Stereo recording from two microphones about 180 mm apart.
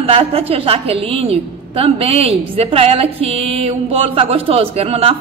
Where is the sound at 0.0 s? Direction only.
35° right (ahead or behind).